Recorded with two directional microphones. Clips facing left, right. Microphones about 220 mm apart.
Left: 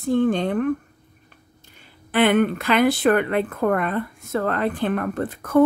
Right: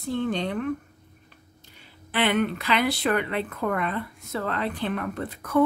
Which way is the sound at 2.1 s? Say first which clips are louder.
Left 6 dB; 50° left (ahead or behind).